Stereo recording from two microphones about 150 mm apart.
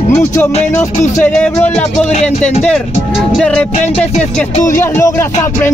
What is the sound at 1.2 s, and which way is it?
Speech, 10° left (ahead or behind).